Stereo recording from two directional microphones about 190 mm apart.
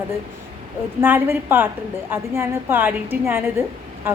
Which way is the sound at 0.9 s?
10° right (ahead or behind).